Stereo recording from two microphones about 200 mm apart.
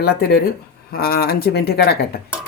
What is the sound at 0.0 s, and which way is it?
Speech, 50° left (ahead or behind).